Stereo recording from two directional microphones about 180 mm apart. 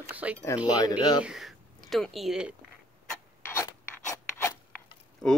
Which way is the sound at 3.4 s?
15° left (ahead or behind).